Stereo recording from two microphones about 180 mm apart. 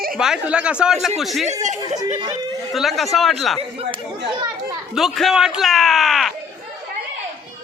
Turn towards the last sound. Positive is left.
turn(degrees=0)  # may be behind; listen again after turning